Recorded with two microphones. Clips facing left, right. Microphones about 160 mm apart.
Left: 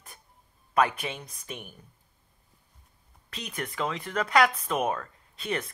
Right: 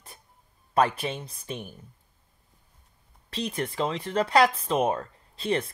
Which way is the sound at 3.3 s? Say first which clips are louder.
Right 6 dB; 30° right (ahead or behind).